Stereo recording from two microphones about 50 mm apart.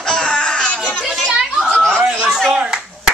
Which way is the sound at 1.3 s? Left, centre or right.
Centre.